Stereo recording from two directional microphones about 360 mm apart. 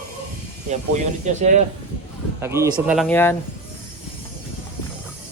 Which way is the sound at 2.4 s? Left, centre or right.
Centre.